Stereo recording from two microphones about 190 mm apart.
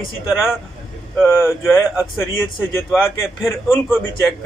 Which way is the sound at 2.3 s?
10° left (ahead or behind).